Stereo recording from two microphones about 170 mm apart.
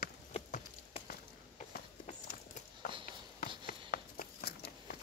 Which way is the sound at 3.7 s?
60° left (ahead or behind).